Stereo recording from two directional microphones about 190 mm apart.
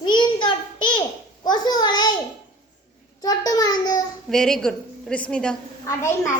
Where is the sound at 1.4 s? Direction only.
20° left (ahead or behind).